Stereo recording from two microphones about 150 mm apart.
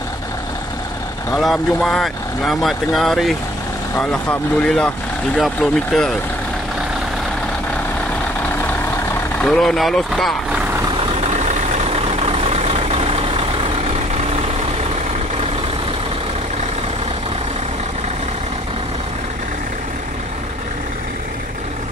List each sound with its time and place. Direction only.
1.3 s speech: centre (ahead or behind)
9.4 s speech: 5° left (ahead or behind)
11.0 s vehicle: 45° right (ahead or behind)